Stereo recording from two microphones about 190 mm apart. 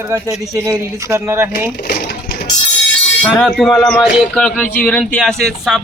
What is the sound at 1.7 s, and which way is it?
Coin, 55° left (ahead or behind).